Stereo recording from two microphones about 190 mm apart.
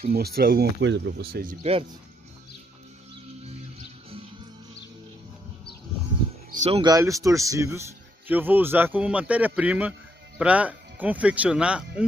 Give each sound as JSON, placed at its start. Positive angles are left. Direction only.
{"t": 0.1, "sound": "speech", "side_deg": -55}
{"t": 1.6, "sound": "speech", "side_deg": -30}
{"t": 6.5, "sound": "speech", "side_deg": -35}
{"t": 6.8, "sound": "speech", "side_deg": -20}